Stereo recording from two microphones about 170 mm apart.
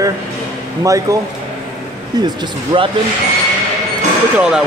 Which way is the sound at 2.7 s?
30° right (ahead or behind).